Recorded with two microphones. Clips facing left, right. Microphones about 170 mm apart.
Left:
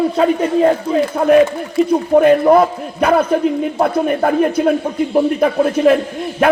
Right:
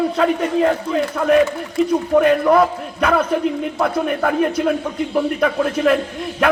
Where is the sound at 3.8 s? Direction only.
30° left (ahead or behind).